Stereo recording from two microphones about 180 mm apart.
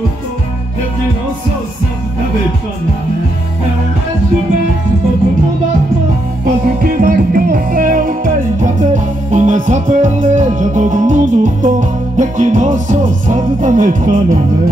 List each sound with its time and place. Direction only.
6.8 s music: 50° right (ahead or behind)